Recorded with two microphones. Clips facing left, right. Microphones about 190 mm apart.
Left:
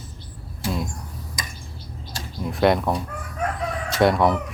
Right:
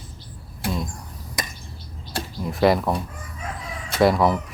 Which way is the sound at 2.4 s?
Centre (ahead or behind).